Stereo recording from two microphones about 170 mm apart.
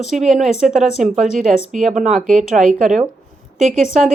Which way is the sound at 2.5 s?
55° right (ahead or behind).